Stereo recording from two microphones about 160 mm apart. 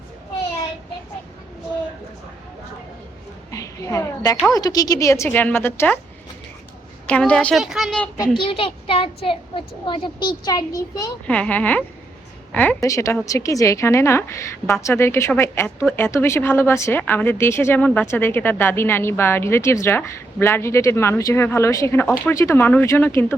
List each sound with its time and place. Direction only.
3.5 s a sound: 20° left (ahead or behind)
4.5 s a woman's voice: 25° left (ahead or behind)
7.1 s a woman's voice: 5° left (ahead or behind)
8.1 s a child's voice: 25° left (ahead or behind)
11.3 s a woman's voice: 10° left (ahead or behind)